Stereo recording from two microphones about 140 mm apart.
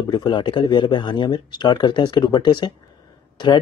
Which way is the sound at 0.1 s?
30° left (ahead or behind).